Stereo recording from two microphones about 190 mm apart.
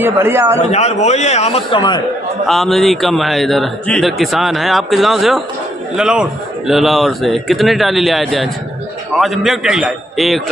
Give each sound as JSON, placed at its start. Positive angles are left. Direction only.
{"t": 0.0, "sound": "a man's voice", "side_deg": -10}
{"t": 0.6, "sound": "a man's voice", "side_deg": 35}
{"t": 2.4, "sound": "a man's voice", "side_deg": 0}